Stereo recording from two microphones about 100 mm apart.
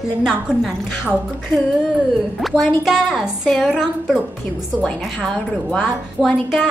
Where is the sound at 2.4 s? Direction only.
Centre (ahead or behind).